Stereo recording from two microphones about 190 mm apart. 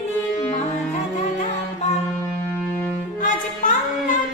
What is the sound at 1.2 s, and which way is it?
Music, 40° left (ahead or behind).